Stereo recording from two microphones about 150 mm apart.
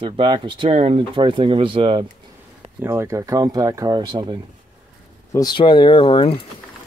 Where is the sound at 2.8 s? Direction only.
15° right (ahead or behind).